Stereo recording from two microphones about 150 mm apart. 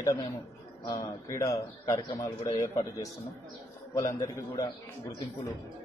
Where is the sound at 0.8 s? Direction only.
20° left (ahead or behind).